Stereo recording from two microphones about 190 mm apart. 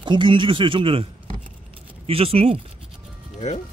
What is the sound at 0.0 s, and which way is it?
Speech, 25° right (ahead or behind).